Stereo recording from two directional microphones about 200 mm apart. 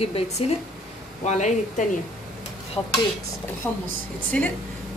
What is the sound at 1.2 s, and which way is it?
Speech, 35° left (ahead or behind).